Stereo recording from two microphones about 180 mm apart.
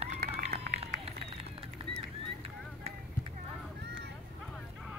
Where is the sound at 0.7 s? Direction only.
35° right (ahead or behind).